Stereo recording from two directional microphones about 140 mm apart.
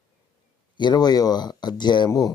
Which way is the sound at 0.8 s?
30° left (ahead or behind).